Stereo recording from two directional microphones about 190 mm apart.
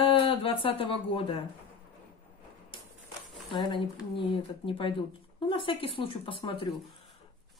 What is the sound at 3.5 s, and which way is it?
Speech, 25° left (ahead or behind).